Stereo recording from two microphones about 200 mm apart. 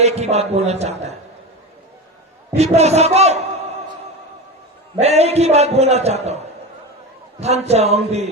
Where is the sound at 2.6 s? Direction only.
30° right (ahead or behind).